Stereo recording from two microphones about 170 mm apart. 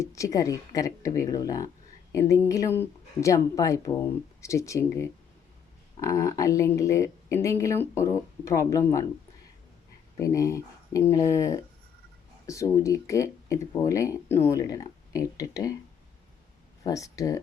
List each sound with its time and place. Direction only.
0.0 s speech: 20° left (ahead or behind)
10.2 s speech: 20° left (ahead or behind)
16.8 s speech: 20° left (ahead or behind)